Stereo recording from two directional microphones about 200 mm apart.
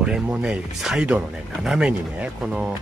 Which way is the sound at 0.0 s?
5° right (ahead or behind).